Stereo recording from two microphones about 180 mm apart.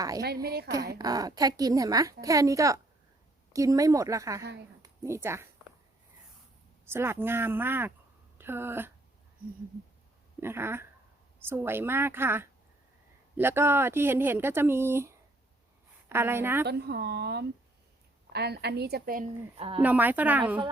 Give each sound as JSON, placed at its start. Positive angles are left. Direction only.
{"t": 0.4, "sound": "a woman's voice", "side_deg": -60}
{"t": 0.9, "sound": "a woman's voice", "side_deg": -20}
{"t": 6.8, "sound": "speech", "side_deg": -15}
{"t": 10.4, "sound": "speech", "side_deg": -15}
{"t": 16.6, "sound": "a woman's voice", "side_deg": -65}
{"t": 19.5, "sound": "speech", "side_deg": -30}
{"t": 19.8, "sound": "speech", "side_deg": -10}